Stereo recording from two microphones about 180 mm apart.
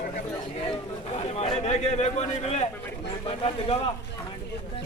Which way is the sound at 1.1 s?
35° left (ahead or behind).